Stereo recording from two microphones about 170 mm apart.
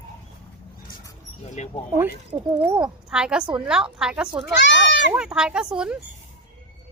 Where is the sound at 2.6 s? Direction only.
5° right (ahead or behind).